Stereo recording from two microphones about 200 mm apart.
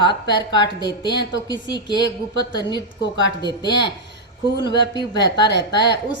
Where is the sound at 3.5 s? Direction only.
20° left (ahead or behind).